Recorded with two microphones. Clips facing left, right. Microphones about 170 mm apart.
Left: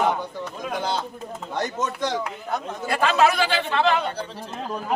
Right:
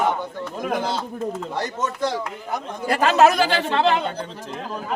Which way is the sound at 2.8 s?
35° right (ahead or behind).